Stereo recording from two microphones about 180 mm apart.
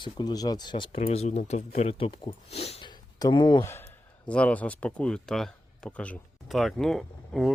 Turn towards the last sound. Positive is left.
turn(degrees=0)  # may be behind; listen again after turning